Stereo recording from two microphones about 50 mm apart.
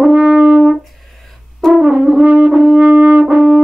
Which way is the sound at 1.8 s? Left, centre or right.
Centre.